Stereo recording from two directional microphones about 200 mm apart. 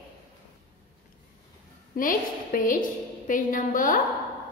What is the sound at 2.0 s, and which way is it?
Child singing, 45° left (ahead or behind).